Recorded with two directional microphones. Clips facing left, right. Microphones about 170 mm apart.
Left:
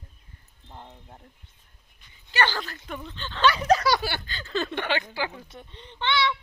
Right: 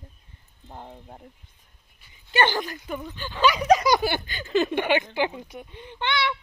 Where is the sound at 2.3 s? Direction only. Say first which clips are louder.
Right 4 dB; 20° right (ahead or behind).